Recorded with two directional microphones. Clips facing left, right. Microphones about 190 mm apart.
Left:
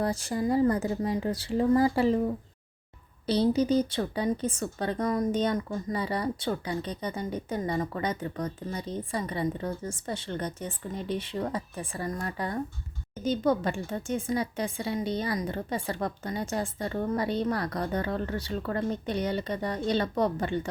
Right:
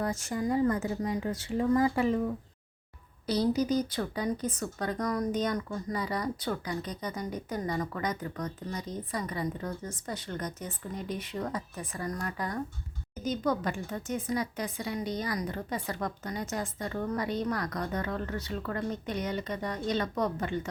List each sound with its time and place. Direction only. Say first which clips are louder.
0.0 s speech: left 3 dB; 35° left (ahead or behind)